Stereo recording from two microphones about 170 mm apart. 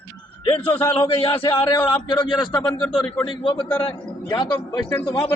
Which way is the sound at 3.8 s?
30° left (ahead or behind).